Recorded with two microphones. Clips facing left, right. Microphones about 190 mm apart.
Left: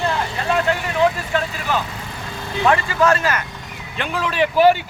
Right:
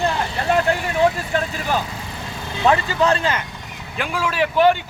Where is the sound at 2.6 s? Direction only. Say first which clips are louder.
Even; 25° right (ahead or behind).